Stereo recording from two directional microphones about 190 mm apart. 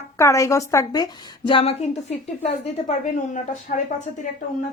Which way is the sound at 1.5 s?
30° left (ahead or behind).